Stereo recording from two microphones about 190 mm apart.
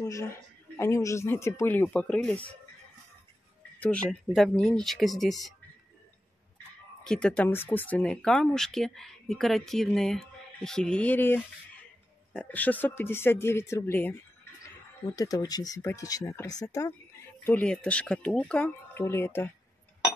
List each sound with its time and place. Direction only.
0.0 s speech: 15° left (ahead or behind)
3.8 s speech: 5° left (ahead or behind)
7.1 s speech: 5° left (ahead or behind)
17.5 s speech: 5° left (ahead or behind)